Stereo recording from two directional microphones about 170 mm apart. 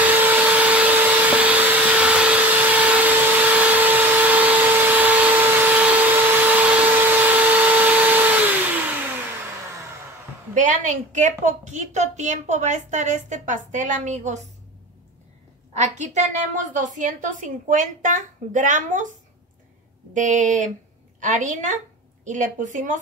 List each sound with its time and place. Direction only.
0.0 s vacuum cleaner: 10° right (ahead or behind)
10.5 s a woman's voice: 45° right (ahead or behind)
15.7 s a woman's voice: 45° right (ahead or behind)
20.2 s a woman's voice: 50° right (ahead or behind)